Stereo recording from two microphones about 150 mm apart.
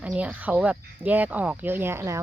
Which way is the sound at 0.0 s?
10° right (ahead or behind).